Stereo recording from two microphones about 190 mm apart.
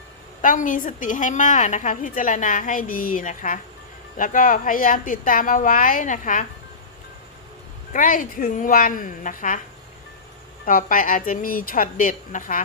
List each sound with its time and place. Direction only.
0.4 s a woman's voice: 45° left (ahead or behind)
7.9 s a woman's voice: 45° left (ahead or behind)
10.7 s a woman's voice: 45° left (ahead or behind)